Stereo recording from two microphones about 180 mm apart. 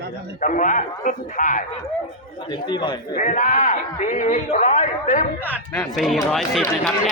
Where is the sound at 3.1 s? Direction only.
45° left (ahead or behind).